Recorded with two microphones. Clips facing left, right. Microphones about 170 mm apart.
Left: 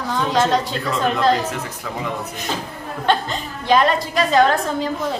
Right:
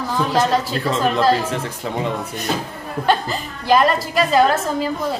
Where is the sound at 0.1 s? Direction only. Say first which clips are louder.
Even; 5° right (ahead or behind).